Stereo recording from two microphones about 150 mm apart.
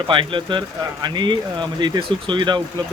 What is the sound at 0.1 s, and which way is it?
Speech, 35° right (ahead or behind).